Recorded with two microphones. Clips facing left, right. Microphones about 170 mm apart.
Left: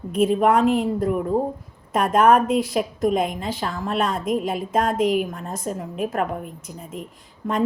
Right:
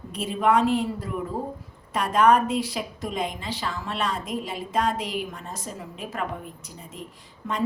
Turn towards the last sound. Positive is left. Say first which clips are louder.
# left 6 dB
turn(degrees=50)  # may be behind; listen again after turning